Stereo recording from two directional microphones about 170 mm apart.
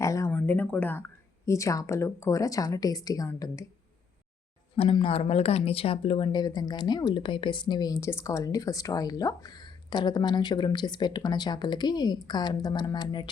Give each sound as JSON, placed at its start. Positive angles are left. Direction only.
{"t": 0.0, "sound": "speech", "side_deg": 20}
{"t": 4.8, "sound": "speech", "side_deg": 30}